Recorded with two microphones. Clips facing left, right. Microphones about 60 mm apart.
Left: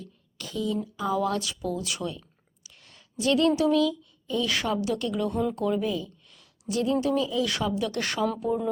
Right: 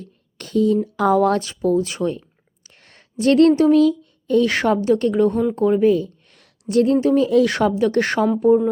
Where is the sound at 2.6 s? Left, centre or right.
Right.